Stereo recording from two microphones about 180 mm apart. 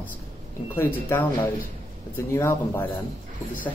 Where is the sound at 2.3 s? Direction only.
15° left (ahead or behind).